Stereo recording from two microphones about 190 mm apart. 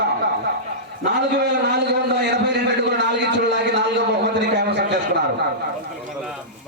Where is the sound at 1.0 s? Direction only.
65° right (ahead or behind).